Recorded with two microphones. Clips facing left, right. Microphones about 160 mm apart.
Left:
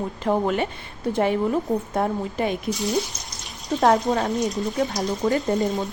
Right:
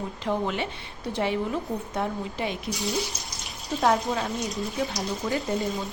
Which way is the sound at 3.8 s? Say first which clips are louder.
Left 5 dB; 50° left (ahead or behind).